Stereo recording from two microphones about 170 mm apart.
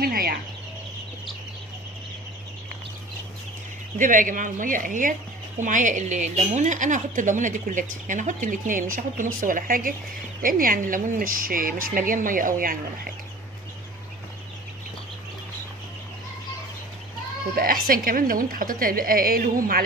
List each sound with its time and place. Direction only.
0.0 s chicken: 60° right (ahead or behind)
4.0 s speech: 50° right (ahead or behind)
17.6 s speech: 60° right (ahead or behind)